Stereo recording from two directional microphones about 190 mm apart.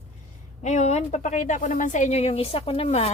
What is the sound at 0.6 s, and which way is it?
A woman's voice, 40° left (ahead or behind).